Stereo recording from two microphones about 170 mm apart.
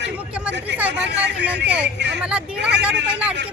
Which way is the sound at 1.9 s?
90° right.